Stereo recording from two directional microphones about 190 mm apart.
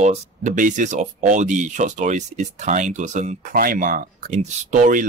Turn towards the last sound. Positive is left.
turn(degrees=-40)  # may be behind; listen again after turning